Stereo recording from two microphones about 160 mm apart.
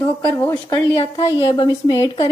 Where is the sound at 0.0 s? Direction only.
15° left (ahead or behind).